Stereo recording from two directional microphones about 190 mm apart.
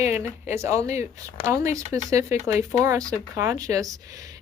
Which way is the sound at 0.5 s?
15° right (ahead or behind).